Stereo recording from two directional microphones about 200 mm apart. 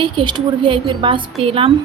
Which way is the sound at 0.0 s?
25° right (ahead or behind).